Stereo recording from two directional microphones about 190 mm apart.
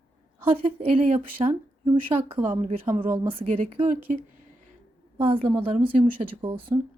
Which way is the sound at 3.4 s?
45° right (ahead or behind).